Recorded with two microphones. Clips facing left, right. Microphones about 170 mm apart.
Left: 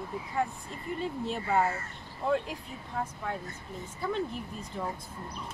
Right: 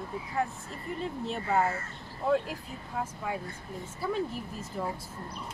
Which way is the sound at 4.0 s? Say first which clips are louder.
Right 1 dB; 5° right (ahead or behind).